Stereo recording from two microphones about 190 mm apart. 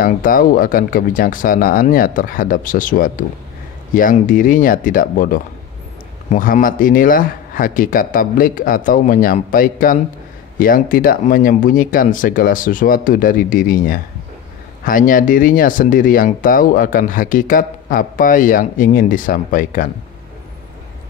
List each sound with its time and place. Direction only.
0.0 s speech: 45° left (ahead or behind)